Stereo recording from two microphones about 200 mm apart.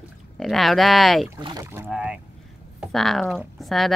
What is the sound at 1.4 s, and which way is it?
Speech, 20° right (ahead or behind).